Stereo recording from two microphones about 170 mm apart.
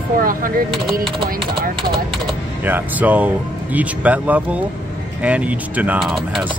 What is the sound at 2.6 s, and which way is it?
Speech, 10° right (ahead or behind).